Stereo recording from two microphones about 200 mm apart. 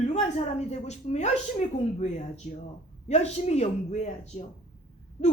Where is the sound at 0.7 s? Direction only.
35° left (ahead or behind).